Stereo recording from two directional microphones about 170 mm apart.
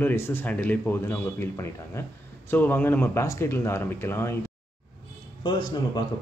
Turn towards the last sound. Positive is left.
turn(degrees=25)  # may be behind; listen again after turning